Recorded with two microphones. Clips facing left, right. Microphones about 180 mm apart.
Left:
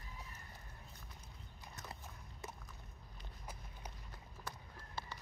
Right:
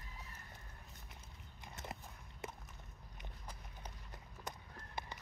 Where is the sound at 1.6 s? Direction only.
20° right (ahead or behind).